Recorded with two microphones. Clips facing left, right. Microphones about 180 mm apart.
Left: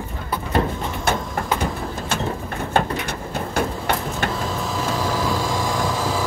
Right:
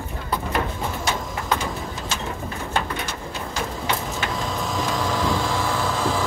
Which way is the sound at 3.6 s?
55° left (ahead or behind).